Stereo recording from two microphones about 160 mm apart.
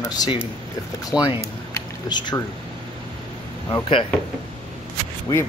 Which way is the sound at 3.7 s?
30° left (ahead or behind).